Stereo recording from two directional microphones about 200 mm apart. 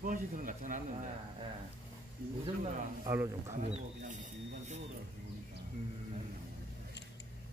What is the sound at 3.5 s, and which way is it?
Speech, 35° right (ahead or behind).